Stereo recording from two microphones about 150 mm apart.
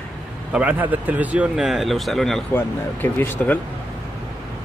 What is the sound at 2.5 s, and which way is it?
Speech, 15° left (ahead or behind).